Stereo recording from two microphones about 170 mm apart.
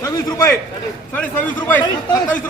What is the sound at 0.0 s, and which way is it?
Speech, 20° left (ahead or behind).